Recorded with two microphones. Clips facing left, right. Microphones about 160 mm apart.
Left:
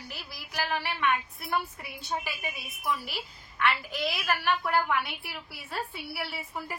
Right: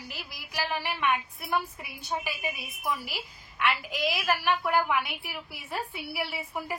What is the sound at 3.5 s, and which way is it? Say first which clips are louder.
A woman's voice: even; 15° right (ahead or behind).